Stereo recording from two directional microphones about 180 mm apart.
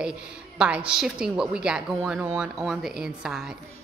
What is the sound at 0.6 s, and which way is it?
A woman's voice, 5° right (ahead or behind).